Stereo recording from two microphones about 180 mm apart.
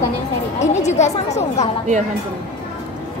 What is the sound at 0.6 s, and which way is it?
A woman's voice, 40° left (ahead or behind).